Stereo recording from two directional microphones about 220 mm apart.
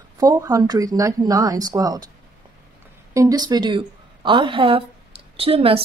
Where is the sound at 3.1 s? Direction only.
15° right (ahead or behind).